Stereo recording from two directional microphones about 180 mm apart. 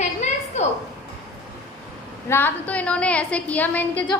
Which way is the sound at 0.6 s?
40° left (ahead or behind).